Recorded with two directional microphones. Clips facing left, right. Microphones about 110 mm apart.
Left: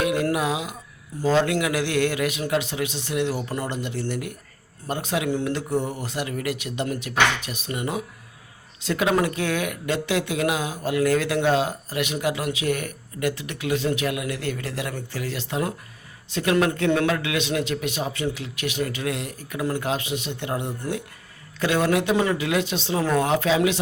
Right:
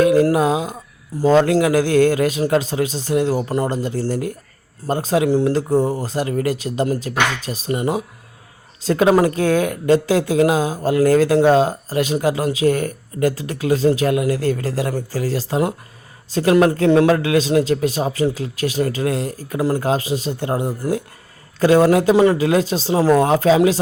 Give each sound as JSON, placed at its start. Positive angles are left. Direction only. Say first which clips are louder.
{"t": 0.0, "sound": "speech", "louder": "right 9 dB", "side_deg": -35}